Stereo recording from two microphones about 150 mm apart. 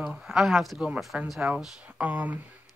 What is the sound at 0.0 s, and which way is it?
Speech, 5° right (ahead or behind).